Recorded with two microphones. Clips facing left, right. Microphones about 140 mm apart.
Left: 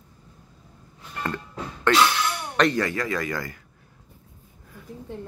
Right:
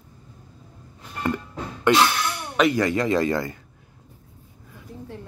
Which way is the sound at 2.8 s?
20° right (ahead or behind).